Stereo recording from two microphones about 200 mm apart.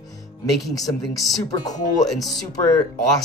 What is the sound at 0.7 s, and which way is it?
Speech, 20° left (ahead or behind).